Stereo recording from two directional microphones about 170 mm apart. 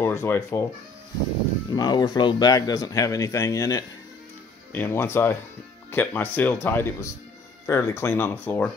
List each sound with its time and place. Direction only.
0.0 s speech: 15° left (ahead or behind)
1.7 s speech: 25° left (ahead or behind)